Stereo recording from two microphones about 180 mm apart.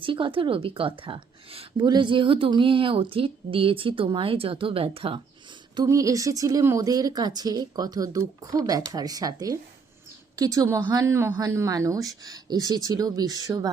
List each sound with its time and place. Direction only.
0.0 s a woman's voice: 30° right (ahead or behind)
5.7 s a woman's voice: 20° right (ahead or behind)